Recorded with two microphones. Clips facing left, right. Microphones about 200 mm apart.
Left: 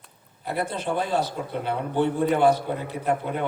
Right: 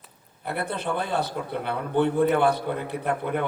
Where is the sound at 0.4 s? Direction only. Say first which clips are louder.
Left 1 dB; 60° right (ahead or behind).